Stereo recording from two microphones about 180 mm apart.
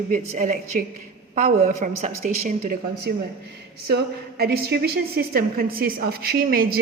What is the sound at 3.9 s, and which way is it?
A woman's voice, 60° right (ahead or behind).